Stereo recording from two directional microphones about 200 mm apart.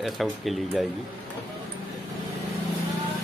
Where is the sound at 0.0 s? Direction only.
Centre (ahead or behind).